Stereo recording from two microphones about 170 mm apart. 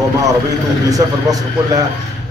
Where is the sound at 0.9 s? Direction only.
20° right (ahead or behind).